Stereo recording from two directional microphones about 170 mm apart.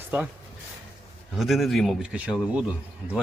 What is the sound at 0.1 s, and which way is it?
Speech, 10° right (ahead or behind).